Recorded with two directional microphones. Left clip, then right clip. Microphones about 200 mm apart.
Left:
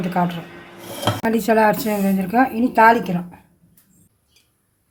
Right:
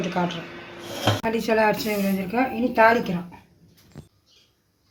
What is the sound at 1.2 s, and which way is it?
A woman's voice, 40° left (ahead or behind).